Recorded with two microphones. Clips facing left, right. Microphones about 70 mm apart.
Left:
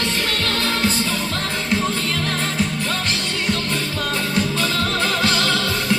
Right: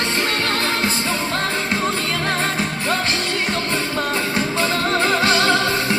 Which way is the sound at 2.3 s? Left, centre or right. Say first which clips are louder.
Right 1 dB; right.